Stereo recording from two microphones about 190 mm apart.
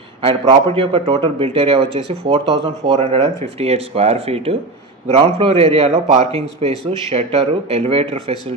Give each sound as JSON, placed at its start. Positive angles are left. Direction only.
{"t": 0.2, "sound": "a man's voice", "side_deg": -30}